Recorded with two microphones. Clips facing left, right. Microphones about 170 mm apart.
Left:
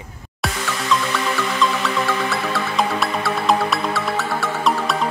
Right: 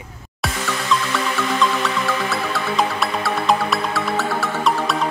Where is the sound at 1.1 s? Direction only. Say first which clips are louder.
Even; centre (ahead or behind).